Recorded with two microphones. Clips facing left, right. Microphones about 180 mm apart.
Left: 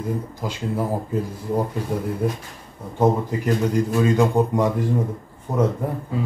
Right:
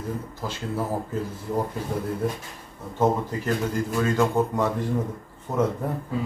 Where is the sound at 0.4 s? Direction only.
15° left (ahead or behind).